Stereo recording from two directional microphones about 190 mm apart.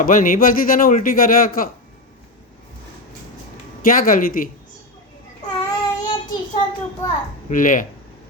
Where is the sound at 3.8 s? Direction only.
45° left (ahead or behind).